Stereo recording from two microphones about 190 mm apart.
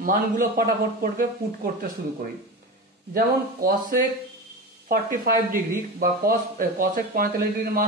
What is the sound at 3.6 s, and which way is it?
Speech, 50° right (ahead or behind).